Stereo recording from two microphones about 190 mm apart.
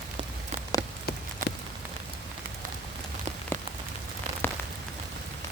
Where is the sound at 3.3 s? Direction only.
35° right (ahead or behind).